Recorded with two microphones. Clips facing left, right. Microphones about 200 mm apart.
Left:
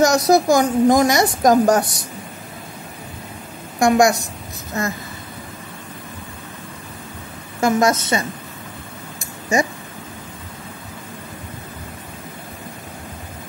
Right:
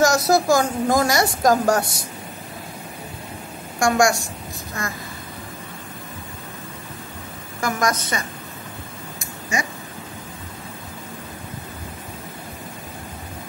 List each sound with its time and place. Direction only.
0.0 s a woman's voice: 20° left (ahead or behind)
3.8 s a woman's voice: 20° left (ahead or behind)
7.6 s a woman's voice: 25° left (ahead or behind)